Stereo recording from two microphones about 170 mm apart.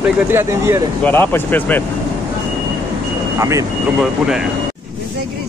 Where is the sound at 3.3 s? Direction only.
20° right (ahead or behind).